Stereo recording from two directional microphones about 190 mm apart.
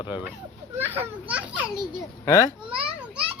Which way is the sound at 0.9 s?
5° right (ahead or behind).